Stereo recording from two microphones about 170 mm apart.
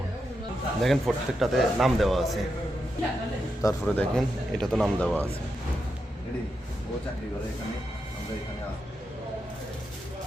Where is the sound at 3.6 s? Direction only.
20° left (ahead or behind).